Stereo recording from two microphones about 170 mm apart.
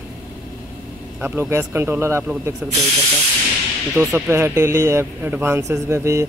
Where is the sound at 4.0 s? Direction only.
15° right (ahead or behind).